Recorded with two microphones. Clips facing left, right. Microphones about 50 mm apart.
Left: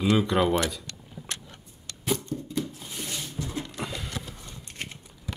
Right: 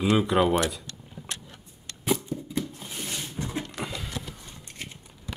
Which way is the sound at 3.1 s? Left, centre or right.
Right.